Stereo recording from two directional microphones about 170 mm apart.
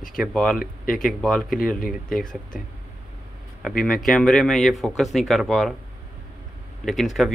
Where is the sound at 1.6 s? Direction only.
55° left (ahead or behind).